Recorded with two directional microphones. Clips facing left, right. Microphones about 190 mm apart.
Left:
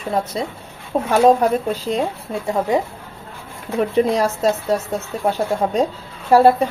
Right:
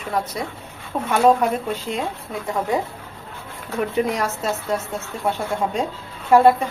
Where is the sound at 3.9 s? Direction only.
30° left (ahead or behind).